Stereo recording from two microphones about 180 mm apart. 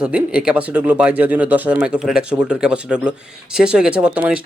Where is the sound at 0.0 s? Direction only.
5° right (ahead or behind).